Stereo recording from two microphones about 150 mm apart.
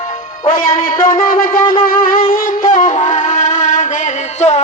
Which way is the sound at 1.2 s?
65° left (ahead or behind).